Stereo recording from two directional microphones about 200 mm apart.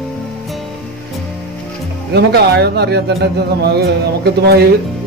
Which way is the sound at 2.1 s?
55° right (ahead or behind).